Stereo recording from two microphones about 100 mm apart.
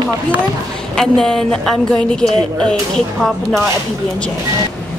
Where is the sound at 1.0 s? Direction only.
5° left (ahead or behind).